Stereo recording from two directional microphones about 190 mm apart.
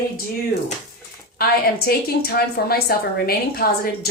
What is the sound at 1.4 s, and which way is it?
A woman's voice, 55° left (ahead or behind).